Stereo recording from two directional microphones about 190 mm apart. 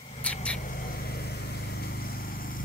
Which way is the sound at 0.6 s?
50° left (ahead or behind).